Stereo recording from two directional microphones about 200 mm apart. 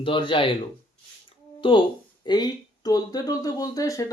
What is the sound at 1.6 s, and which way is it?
Speech, 25° left (ahead or behind).